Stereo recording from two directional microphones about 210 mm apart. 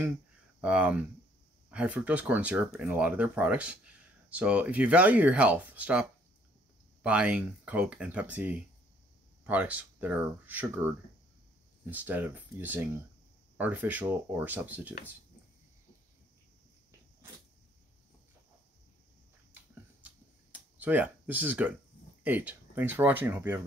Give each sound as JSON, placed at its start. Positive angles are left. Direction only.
{"t": 0.6, "sound": "speech", "side_deg": -5}
{"t": 20.5, "sound": "speech", "side_deg": -5}